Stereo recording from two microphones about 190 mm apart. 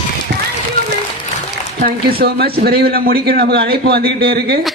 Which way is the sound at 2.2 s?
55° right (ahead or behind).